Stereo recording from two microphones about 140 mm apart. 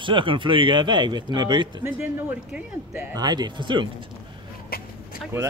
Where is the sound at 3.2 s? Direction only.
30° right (ahead or behind).